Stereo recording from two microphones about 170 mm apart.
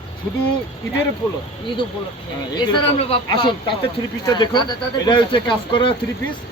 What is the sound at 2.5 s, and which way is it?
Speech, 30° left (ahead or behind).